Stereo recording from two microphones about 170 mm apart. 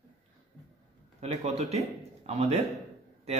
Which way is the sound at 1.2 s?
40° right (ahead or behind).